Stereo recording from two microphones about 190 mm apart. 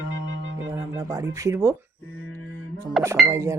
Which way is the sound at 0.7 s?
15° right (ahead or behind).